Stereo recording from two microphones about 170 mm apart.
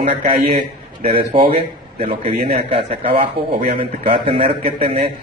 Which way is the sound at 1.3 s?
35° right (ahead or behind).